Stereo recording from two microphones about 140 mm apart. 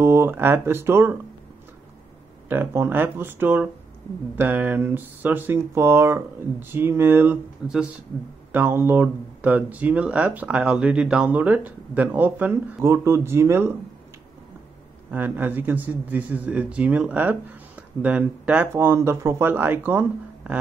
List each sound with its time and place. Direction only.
0.0 s speech: 15° right (ahead or behind)
2.5 s speech: 15° right (ahead or behind)
15.0 s speech: 10° right (ahead or behind)